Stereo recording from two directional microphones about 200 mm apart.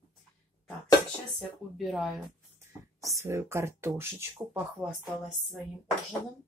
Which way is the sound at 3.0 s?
15° right (ahead or behind).